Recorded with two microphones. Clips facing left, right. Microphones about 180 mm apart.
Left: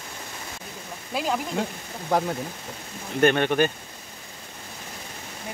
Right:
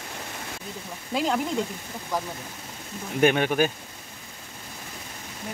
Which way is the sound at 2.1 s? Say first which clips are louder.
Left 6 dB; 70° left (ahead or behind).